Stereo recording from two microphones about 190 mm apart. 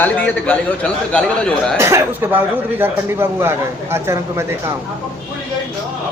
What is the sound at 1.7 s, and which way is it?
Speech, 15° right (ahead or behind).